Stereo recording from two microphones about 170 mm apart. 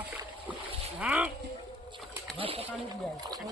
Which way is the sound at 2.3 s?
35° right (ahead or behind).